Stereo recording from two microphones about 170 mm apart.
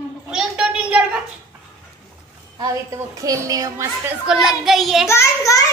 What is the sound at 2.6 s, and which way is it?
A woman's voice, 20° right (ahead or behind).